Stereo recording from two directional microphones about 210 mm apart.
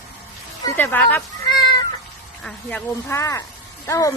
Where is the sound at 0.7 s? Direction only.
10° left (ahead or behind).